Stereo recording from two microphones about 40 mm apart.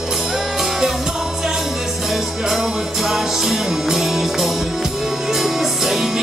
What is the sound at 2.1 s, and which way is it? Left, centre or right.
Music, centre.